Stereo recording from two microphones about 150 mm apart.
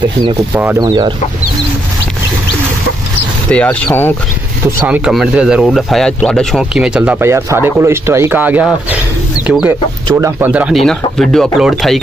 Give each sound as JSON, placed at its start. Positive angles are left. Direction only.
{"t": 0.7, "sound": "speech", "side_deg": -30}
{"t": 3.5, "sound": "speech", "side_deg": 10}
{"t": 4.6, "sound": "speech", "side_deg": -15}
{"t": 10.1, "sound": "speech", "side_deg": -15}
{"t": 10.8, "sound": "speech", "side_deg": 5}